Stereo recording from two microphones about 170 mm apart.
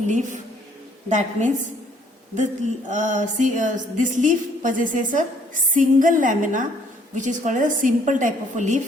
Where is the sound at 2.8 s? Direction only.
45° right (ahead or behind).